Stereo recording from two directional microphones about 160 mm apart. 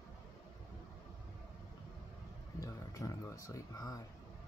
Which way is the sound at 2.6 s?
20° left (ahead or behind).